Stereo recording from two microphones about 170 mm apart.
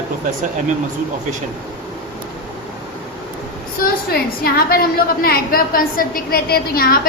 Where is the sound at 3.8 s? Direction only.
65° left (ahead or behind).